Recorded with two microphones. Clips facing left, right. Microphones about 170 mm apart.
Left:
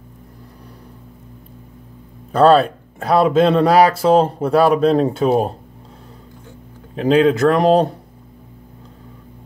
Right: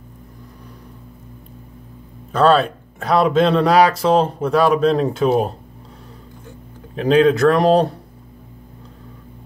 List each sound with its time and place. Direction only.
2.3 s speech: 30° left (ahead or behind)
7.0 s speech: 25° left (ahead or behind)